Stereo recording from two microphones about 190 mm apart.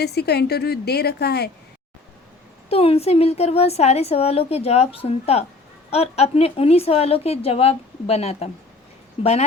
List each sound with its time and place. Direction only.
0.0 s a woman's voice: 60° left (ahead or behind)
2.6 s a woman's voice: 30° left (ahead or behind)